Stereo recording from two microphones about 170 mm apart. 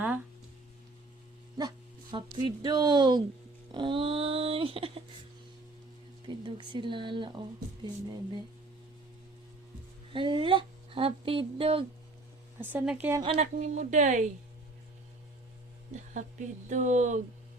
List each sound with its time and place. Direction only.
1.5 s speech: 25° right (ahead or behind)
6.2 s speech: 30° right (ahead or behind)
10.1 s speech: 30° right (ahead or behind)
12.5 s speech: 10° right (ahead or behind)
13.2 s speech: 40° right (ahead or behind)
16.1 s speech: 45° right (ahead or behind)